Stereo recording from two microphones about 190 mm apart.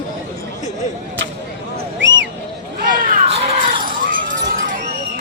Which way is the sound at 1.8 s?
75° right (ahead or behind).